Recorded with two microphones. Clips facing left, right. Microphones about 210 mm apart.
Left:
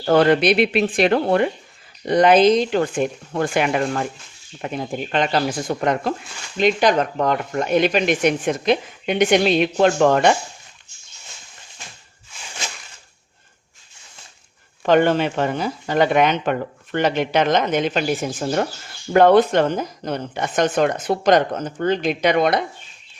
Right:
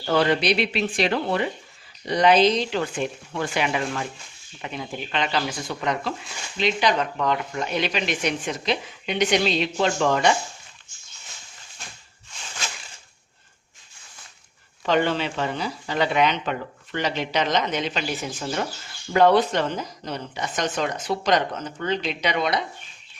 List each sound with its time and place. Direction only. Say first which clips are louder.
0.0 s speech: left 6 dB; 50° left (ahead or behind)
14.8 s speech: left 6 dB; 50° left (ahead or behind)